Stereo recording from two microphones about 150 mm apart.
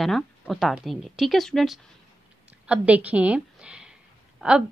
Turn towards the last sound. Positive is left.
turn(degrees=-5)  # may be behind; listen again after turning